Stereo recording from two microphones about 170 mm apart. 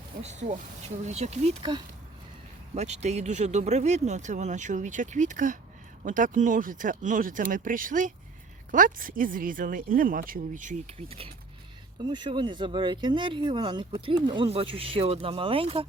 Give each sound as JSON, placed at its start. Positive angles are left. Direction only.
{"t": 0.2, "sound": "speech", "side_deg": -40}
{"t": 2.7, "sound": "speech", "side_deg": -40}